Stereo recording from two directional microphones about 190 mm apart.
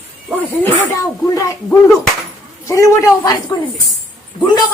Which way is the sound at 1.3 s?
15° left (ahead or behind).